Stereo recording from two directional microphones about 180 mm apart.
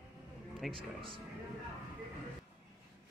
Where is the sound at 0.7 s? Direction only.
30° right (ahead or behind).